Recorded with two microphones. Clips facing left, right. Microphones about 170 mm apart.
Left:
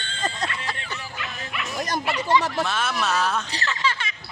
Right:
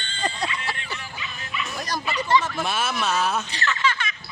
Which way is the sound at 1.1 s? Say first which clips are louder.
Even; 65° left (ahead or behind).